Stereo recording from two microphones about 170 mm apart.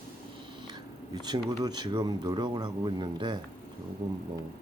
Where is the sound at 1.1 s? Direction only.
25° right (ahead or behind).